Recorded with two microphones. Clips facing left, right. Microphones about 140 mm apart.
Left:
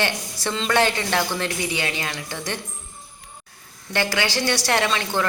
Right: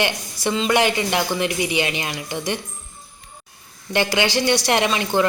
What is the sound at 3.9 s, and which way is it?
Speech, 20° right (ahead or behind).